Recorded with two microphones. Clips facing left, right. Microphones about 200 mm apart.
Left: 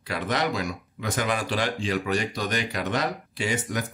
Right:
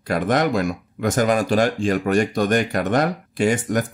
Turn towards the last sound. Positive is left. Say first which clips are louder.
# right 9 dB
turn(degrees=-50)  # may be behind; listen again after turning